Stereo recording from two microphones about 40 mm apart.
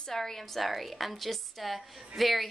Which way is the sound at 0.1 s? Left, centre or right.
Centre.